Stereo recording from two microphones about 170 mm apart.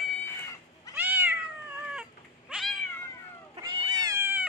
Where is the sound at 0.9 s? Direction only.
10° right (ahead or behind).